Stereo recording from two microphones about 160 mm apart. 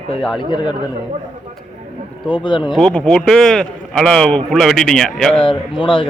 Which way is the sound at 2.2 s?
30° left (ahead or behind).